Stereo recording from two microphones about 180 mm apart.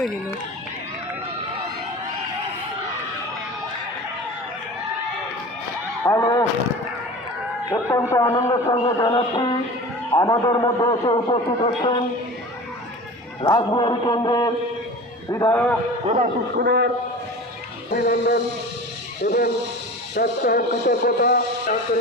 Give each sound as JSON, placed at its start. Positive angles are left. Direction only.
{"t": 6.1, "sound": "speech", "side_deg": 20}
{"t": 7.7, "sound": "a man's voice", "side_deg": 15}
{"t": 13.4, "sound": "a man's voice", "side_deg": 25}
{"t": 16.0, "sound": "speech", "side_deg": -45}
{"t": 16.6, "sound": "a man's voice", "side_deg": -70}
{"t": 17.9, "sound": "music", "side_deg": 55}
{"t": 20.1, "sound": "speech", "side_deg": 55}